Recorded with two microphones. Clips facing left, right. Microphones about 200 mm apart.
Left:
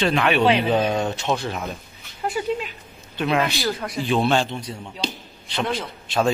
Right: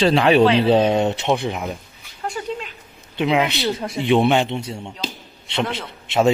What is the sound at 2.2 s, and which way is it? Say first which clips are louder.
Speech: left 3 dB; 5° left (ahead or behind).